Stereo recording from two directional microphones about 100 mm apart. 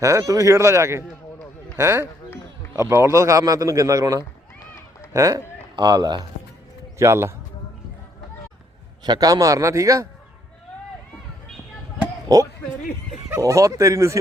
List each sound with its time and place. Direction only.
0.0 s a man's voice: 35° right (ahead or behind)
5.7 s speech: 45° right (ahead or behind)
7.0 s speech: 25° right (ahead or behind)
9.0 s a man's voice: 40° right (ahead or behind)
12.3 s a man's voice: 40° right (ahead or behind)